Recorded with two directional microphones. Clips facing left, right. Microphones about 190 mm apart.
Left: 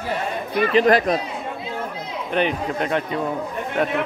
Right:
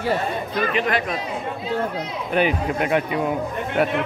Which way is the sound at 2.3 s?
5° right (ahead or behind).